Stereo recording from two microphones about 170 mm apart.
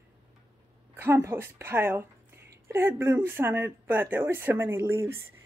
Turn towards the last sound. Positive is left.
turn(degrees=-15)  # may be behind; listen again after turning